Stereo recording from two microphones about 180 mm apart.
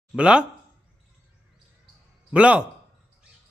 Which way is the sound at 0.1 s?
5° right (ahead or behind).